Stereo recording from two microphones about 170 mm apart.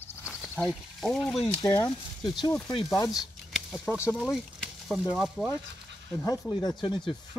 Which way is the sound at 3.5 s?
Centre (ahead or behind).